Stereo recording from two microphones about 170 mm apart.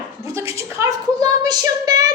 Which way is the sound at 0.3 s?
15° right (ahead or behind).